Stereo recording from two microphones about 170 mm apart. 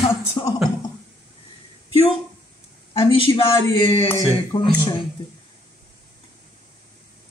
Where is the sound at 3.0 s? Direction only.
30° left (ahead or behind).